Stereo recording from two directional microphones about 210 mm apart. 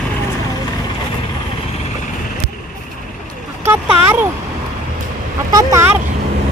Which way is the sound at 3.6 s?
10° right (ahead or behind).